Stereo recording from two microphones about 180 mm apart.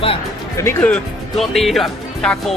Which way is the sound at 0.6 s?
10° left (ahead or behind).